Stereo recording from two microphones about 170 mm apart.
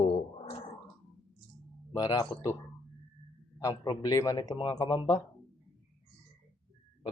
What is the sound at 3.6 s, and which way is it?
Speech, 20° left (ahead or behind).